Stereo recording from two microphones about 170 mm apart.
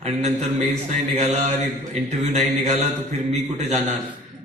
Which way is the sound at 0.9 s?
40° right (ahead or behind).